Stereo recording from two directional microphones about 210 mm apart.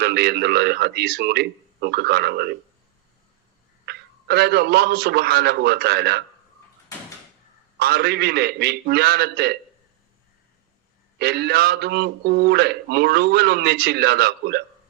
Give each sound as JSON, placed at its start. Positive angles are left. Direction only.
{"t": 0.0, "sound": "speech", "side_deg": -50}
{"t": 3.8, "sound": "speech", "side_deg": -50}
{"t": 7.8, "sound": "speech", "side_deg": -50}
{"t": 11.2, "sound": "speech", "side_deg": -50}